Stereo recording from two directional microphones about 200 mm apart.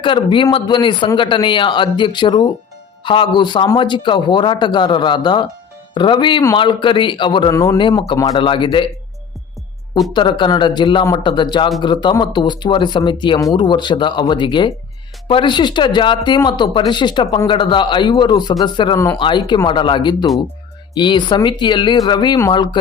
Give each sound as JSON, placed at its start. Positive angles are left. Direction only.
{"t": 0.0, "sound": "speech", "side_deg": 25}
{"t": 10.1, "sound": "speech", "side_deg": 25}